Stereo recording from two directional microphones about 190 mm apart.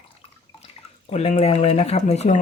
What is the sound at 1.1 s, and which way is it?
Speech, 35° left (ahead or behind).